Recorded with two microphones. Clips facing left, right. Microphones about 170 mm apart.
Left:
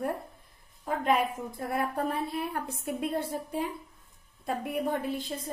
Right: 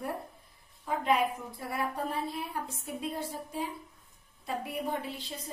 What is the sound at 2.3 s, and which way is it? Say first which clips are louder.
A woman's voice: left 4 dB; 60° left (ahead or behind).